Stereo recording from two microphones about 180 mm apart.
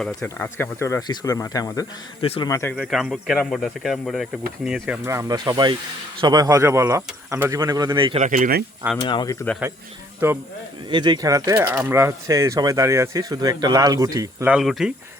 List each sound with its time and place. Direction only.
0.0 s speech: 5° left (ahead or behind)
2.2 s speech: 35° left (ahead or behind)
2.5 s speech: 15° left (ahead or behind)
2.7 s speech: 5° right (ahead or behind)
5.0 s speech: 15° right (ahead or behind)
8.2 s speech: 50° right (ahead or behind)
9.0 s speech: 25° left (ahead or behind)
10.2 s speech: 15° right (ahead or behind)
10.8 s speech: 25° right (ahead or behind)
14.5 s speech: centre (ahead or behind)